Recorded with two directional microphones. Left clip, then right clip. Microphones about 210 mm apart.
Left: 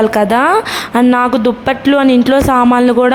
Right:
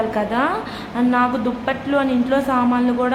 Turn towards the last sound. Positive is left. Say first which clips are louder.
# left 10 dB
turn(degrees=45)  # may be behind; listen again after turning